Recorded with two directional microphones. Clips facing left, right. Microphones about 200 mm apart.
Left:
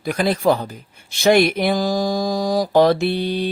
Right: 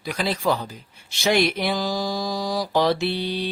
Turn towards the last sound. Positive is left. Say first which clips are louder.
# left 5 dB
turn(degrees=50)  # may be behind; listen again after turning